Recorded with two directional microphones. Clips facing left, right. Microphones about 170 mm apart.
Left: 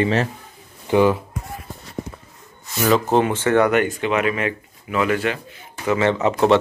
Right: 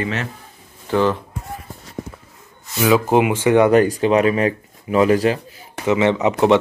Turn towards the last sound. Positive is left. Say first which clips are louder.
# right 1 dB
turn(degrees=-15)  # may be behind; listen again after turning